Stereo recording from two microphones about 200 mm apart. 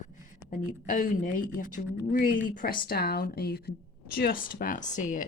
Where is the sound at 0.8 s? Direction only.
40° left (ahead or behind).